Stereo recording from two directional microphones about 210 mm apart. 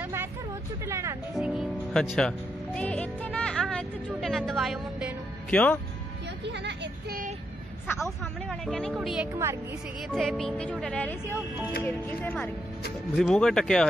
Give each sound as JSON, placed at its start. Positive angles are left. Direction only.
{"t": 0.0, "sound": "hubbub", "side_deg": -10}
{"t": 0.8, "sound": "speech", "side_deg": -15}
{"t": 1.3, "sound": "music", "side_deg": 0}
{"t": 5.5, "sound": "speech", "side_deg": 5}
{"t": 6.4, "sound": "a sound", "side_deg": -55}
{"t": 7.8, "sound": "a woman's voice", "side_deg": 5}